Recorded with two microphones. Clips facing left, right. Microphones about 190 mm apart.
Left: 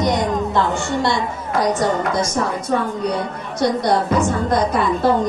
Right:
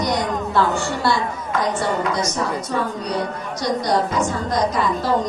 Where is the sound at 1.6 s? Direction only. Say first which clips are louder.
Left 3 dB; 45° left (ahead or behind).